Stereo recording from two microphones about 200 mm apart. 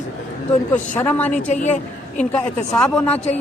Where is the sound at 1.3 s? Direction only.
35° left (ahead or behind).